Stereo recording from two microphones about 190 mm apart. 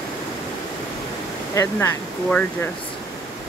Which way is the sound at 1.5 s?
15° left (ahead or behind).